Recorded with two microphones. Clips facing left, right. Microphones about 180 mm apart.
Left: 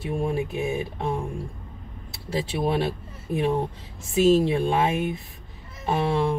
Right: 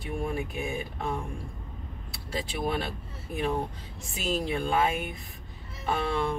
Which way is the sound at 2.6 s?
30° left (ahead or behind).